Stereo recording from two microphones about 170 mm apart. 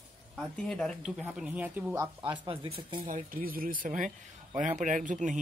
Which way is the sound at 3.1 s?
55° right (ahead or behind).